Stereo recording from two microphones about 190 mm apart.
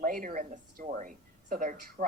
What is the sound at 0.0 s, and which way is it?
Speech, 45° right (ahead or behind).